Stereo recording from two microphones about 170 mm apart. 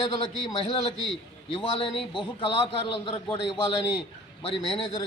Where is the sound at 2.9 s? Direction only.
30° left (ahead or behind).